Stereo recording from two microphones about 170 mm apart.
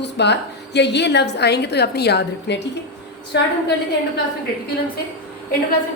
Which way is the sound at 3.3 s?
90° left.